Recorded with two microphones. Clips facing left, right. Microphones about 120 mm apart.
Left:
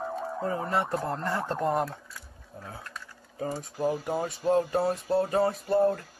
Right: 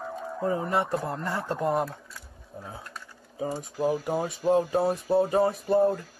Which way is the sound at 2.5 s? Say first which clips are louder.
Right 1 dB; 20° right (ahead or behind).